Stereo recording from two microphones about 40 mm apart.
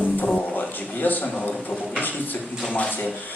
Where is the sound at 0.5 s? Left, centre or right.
Left.